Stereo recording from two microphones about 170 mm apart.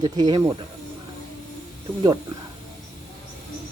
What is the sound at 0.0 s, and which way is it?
Speech, 25° right (ahead or behind).